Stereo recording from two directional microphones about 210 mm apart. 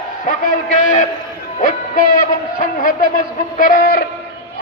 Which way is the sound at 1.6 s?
40° left (ahead or behind).